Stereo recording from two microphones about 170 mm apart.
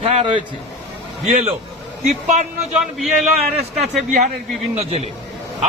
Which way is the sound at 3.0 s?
Centre (ahead or behind).